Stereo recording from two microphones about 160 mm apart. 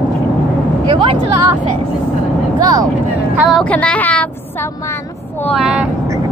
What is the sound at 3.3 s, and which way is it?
Speech, centre (ahead or behind).